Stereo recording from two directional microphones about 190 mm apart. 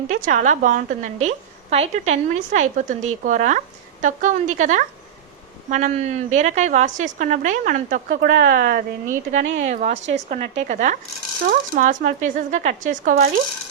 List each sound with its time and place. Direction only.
0.1 s a woman's voice: 40° right (ahead or behind)